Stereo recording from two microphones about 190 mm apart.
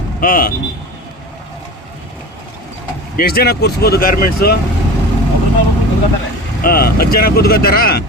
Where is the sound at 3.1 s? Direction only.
55° left (ahead or behind).